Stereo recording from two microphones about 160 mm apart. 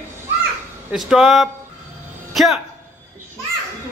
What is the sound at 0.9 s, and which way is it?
Speech, centre (ahead or behind).